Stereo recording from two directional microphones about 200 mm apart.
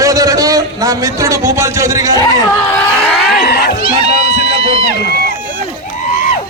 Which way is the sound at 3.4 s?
50° left (ahead or behind).